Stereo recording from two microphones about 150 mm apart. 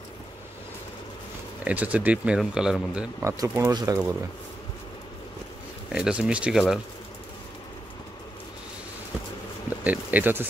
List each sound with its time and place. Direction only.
1.6 s speech: 10° right (ahead or behind)
3.3 s speech: 20° right (ahead or behind)
5.9 s speech: 5° right (ahead or behind)
9.8 s speech: 10° right (ahead or behind)